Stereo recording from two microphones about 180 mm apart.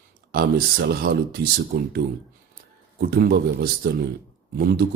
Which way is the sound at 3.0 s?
60° right (ahead or behind).